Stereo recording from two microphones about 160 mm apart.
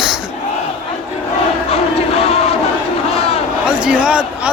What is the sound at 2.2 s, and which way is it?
Crowd, 40° left (ahead or behind).